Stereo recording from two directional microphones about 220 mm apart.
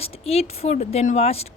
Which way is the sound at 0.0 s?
25° left (ahead or behind).